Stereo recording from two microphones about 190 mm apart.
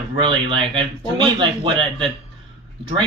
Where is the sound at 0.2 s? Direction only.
25° right (ahead or behind).